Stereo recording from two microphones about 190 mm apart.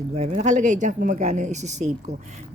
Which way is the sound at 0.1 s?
35° right (ahead or behind).